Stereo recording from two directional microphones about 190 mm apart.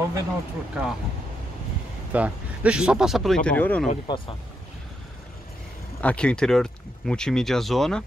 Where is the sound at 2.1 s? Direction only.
5° right (ahead or behind).